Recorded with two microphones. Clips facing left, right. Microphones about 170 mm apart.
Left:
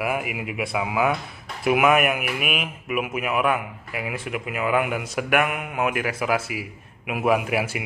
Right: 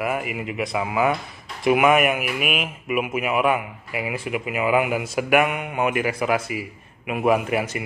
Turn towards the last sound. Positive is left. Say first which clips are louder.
# right 1 dB
turn(degrees=5)  # may be behind; listen again after turning